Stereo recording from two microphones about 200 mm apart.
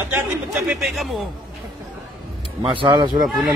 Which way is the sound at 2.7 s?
25° right (ahead or behind).